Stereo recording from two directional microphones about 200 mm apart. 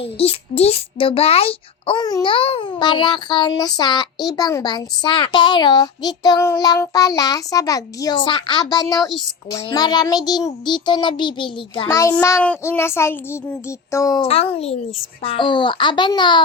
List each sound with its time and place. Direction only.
0.0 s a child's voice: 30° left (ahead or behind)
9.0 s a woman's voice: centre (ahead or behind)
9.5 s a child's voice: 20° left (ahead or behind)
14.2 s a child's voice: 30° left (ahead or behind)